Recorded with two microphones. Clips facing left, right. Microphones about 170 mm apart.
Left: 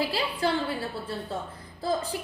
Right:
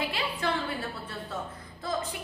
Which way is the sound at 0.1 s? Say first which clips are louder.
Left 4 dB; 35° left (ahead or behind).